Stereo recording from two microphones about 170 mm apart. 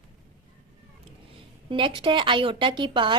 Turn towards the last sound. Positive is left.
turn(degrees=-30)  # may be behind; listen again after turning